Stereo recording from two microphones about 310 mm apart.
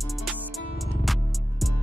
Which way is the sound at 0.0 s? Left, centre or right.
Centre.